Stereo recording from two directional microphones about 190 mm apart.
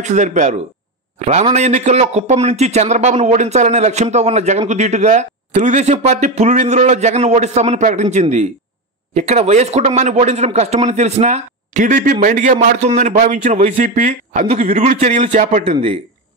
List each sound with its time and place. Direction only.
0.0 s a man's voice: 40° right (ahead or behind)